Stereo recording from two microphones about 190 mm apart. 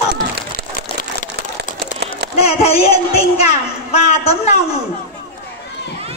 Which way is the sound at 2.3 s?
35° left (ahead or behind).